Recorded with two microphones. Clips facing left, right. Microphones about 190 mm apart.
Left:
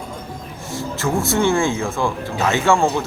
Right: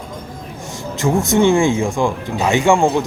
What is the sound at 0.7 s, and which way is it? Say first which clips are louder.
A man's voice: right 3 dB; 15° right (ahead or behind).